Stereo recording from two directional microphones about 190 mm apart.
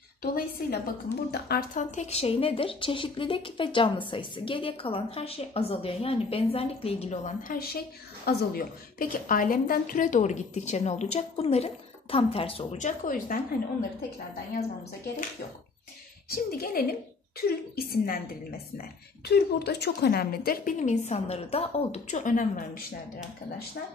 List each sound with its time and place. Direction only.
0.2 s a woman's voice: 55° left (ahead or behind); by 7.5 s 35° left (ahead or behind)
7.5 s a woman's voice: 55° left (ahead or behind)
16.3 s a woman's voice: 50° left (ahead or behind)